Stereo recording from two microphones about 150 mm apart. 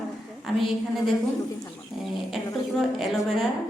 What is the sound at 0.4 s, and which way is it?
Speech, centre (ahead or behind).